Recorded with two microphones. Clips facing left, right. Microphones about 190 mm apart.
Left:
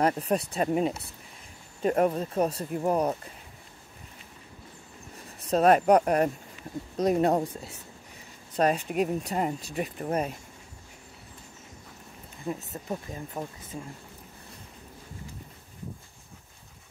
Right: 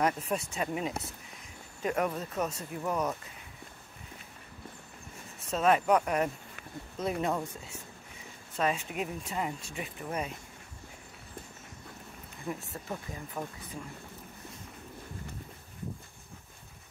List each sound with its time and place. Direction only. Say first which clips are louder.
0.0 s speech: left 5 dB; 35° left (ahead or behind)
5.5 s speech: left 6 dB; 40° left (ahead or behind)
12.7 s speech: left 4 dB; 20° left (ahead or behind)